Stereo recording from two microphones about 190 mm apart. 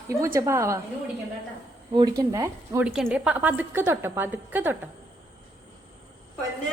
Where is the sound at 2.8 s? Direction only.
5° right (ahead or behind).